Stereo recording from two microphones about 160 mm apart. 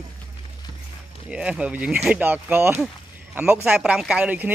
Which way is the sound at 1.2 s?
5° right (ahead or behind).